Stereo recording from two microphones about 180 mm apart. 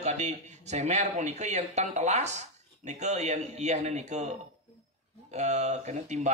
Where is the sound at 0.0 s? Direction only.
40° right (ahead or behind).